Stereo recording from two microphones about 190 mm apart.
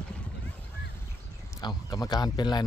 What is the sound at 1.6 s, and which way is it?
Speech, 20° left (ahead or behind).